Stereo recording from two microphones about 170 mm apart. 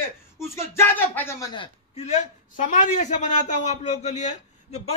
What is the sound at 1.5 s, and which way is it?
Speech, 35° left (ahead or behind).